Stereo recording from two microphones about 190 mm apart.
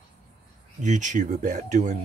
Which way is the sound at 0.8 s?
40° right (ahead or behind).